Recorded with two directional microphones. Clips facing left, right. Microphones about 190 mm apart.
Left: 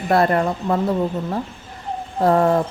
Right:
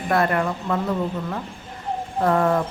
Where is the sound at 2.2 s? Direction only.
30° left (ahead or behind).